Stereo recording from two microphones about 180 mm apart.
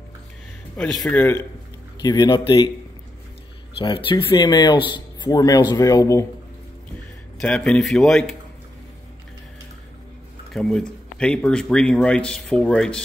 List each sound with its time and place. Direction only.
0.7 s speech: 5° left (ahead or behind); by 2.7 s 25° left (ahead or behind)
3.8 s speech: 25° left (ahead or behind)
7.3 s speech: 5° left (ahead or behind)
10.5 s speech: 5° left (ahead or behind)